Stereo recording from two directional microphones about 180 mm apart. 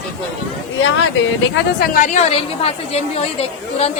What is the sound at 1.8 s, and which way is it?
A woman's voice, 45° left (ahead or behind).